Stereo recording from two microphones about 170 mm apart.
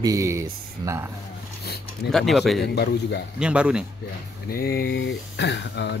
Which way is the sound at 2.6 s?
70° left (ahead or behind).